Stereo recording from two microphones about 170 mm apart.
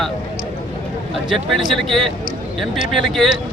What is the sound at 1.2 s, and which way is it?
Speech, centre (ahead or behind).